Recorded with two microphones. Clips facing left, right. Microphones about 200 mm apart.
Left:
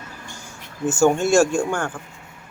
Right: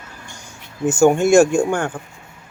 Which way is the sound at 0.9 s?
15° right (ahead or behind).